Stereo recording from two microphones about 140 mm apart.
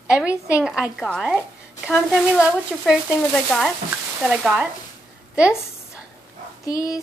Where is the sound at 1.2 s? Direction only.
10° right (ahead or behind).